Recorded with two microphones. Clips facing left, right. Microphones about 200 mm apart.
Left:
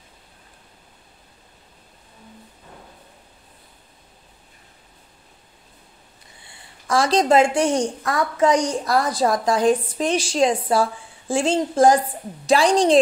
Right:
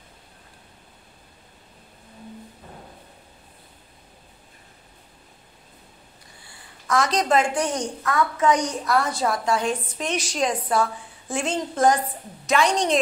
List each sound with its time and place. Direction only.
6.4 s a woman's voice: 30° left (ahead or behind)